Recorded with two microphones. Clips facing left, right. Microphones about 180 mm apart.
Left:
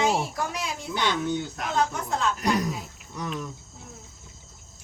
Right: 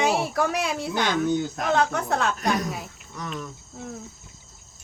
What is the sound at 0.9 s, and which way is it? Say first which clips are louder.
Speech: right 3 dB; 45° right (ahead or behind).